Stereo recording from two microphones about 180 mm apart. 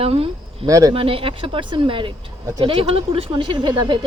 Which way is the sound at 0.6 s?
20° right (ahead or behind).